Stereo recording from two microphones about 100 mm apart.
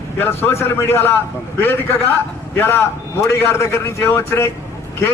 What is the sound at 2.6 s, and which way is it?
Speech, 25° left (ahead or behind).